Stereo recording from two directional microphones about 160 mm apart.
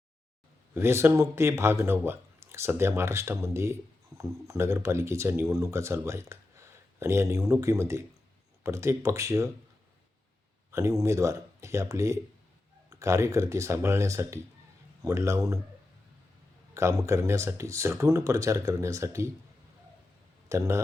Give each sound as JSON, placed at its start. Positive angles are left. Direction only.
{"t": 0.7, "sound": "speech", "side_deg": -15}
{"t": 10.7, "sound": "speech", "side_deg": -20}
{"t": 16.7, "sound": "speech", "side_deg": -15}
{"t": 20.5, "sound": "speech", "side_deg": -15}